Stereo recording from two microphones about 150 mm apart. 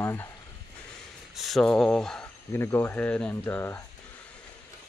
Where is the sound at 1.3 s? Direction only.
Centre (ahead or behind).